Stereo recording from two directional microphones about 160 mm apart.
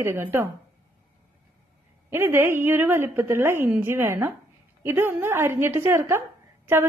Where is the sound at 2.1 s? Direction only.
15° right (ahead or behind).